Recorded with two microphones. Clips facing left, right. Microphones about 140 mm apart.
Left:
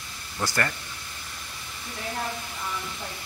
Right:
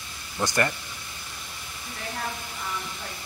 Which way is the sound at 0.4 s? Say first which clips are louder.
Right 3 dB; 20° right (ahead or behind).